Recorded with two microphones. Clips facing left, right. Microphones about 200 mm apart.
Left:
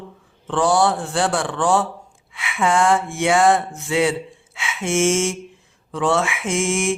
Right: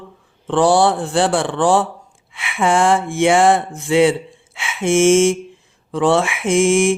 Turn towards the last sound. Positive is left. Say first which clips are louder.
# right 7 dB
turn(degrees=-30)  # may be behind; listen again after turning